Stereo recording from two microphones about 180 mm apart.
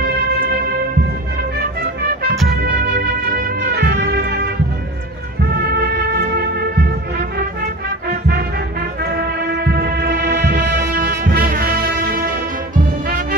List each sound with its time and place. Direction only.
1.6 s music: 60° right (ahead or behind)
3.3 s music: 65° right (ahead or behind)
5.6 s music: 60° right (ahead or behind)
9.0 s music: 60° right (ahead or behind)